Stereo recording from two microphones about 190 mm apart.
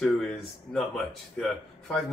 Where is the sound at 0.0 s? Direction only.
5° left (ahead or behind).